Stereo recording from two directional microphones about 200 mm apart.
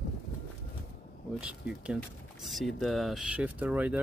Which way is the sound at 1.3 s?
5° right (ahead or behind).